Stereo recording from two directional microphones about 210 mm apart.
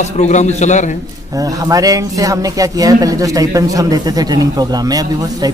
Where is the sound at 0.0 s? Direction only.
35° left (ahead or behind).